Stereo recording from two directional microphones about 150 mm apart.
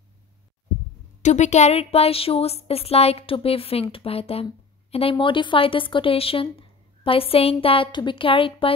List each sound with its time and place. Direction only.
1.2 s a woman's voice: 50° left (ahead or behind); by 8.7 s 35° left (ahead or behind)